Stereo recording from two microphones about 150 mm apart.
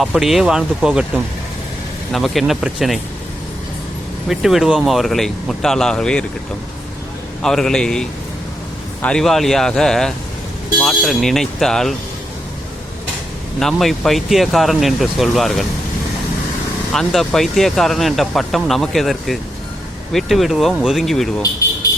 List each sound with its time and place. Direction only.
0.0 s speech: centre (ahead or behind)
4.3 s speech: 5° right (ahead or behind)
7.4 s speech: 5° left (ahead or behind)
13.6 s speech: centre (ahead or behind)
16.9 s speech: centre (ahead or behind)